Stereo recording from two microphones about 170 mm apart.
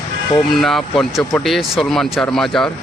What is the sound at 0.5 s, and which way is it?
Speech, centre (ahead or behind).